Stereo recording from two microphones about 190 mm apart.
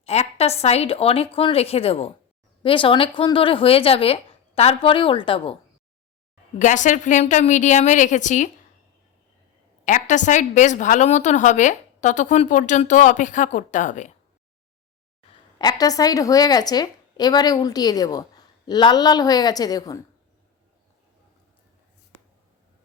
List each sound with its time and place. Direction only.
0.0 s a woman's voice: 35° left (ahead or behind)
6.6 s a woman's voice: 40° left (ahead or behind)
9.8 s a woman's voice: 40° left (ahead or behind)
15.5 s a woman's voice: 20° left (ahead or behind)